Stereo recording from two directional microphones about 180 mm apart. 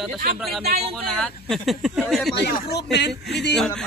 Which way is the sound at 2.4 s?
70° left (ahead or behind).